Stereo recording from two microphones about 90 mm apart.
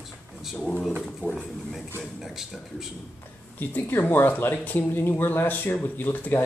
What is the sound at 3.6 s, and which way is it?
Speech, 20° left (ahead or behind).